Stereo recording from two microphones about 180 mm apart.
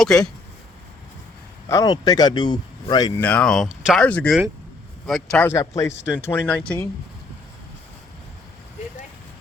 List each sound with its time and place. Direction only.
0.0 s speech: centre (ahead or behind)
1.6 s speech: 20° left (ahead or behind)
3.2 s speech: 5° left (ahead or behind)